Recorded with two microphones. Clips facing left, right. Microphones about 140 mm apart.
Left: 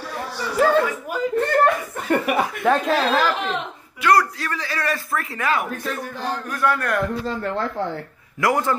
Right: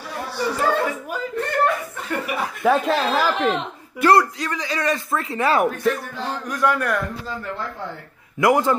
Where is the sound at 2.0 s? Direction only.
60° left (ahead or behind).